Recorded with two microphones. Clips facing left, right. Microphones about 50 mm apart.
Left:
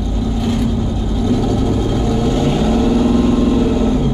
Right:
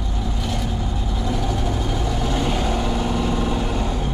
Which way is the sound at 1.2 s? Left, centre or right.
Centre.